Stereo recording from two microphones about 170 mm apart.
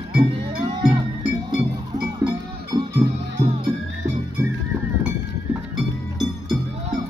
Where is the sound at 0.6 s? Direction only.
25° right (ahead or behind).